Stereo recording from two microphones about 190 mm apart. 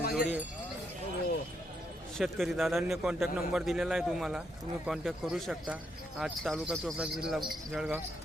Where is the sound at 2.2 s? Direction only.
Centre (ahead or behind).